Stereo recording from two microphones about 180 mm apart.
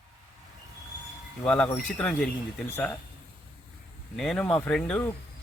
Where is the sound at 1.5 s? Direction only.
10° left (ahead or behind).